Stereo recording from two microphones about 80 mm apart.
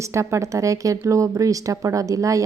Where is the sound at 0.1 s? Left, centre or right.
Right.